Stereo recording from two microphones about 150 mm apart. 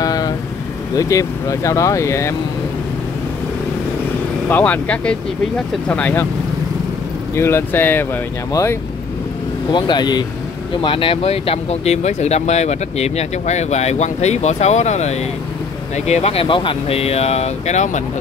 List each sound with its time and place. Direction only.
0.0 s vehicle: 25° left (ahead or behind)
0.9 s speech: 20° left (ahead or behind)
4.5 s speech: 10° left (ahead or behind)
7.3 s speech: 15° left (ahead or behind)
9.7 s speech: 30° left (ahead or behind); by 18.0 s 50° left (ahead or behind)